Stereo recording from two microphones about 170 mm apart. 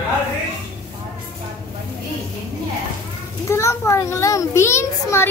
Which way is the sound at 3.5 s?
15° left (ahead or behind).